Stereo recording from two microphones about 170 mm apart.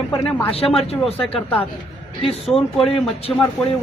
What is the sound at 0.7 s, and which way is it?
Speech, centre (ahead or behind).